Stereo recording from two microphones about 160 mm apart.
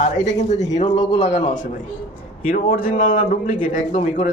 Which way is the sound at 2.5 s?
60° left (ahead or behind).